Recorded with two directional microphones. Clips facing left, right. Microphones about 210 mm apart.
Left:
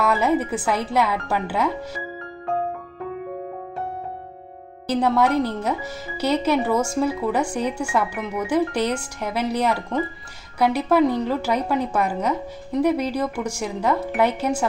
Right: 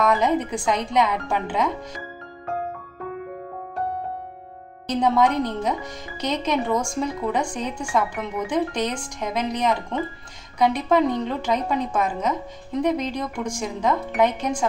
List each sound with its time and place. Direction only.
0.0 s speech: 5° left (ahead or behind)
4.8 s speech: 5° left (ahead or behind)